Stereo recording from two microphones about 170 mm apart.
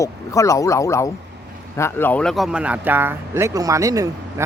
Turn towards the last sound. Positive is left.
turn(degrees=-20)  # may be behind; listen again after turning